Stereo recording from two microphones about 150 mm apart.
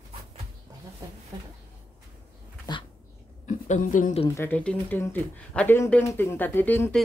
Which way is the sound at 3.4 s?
55° left (ahead or behind).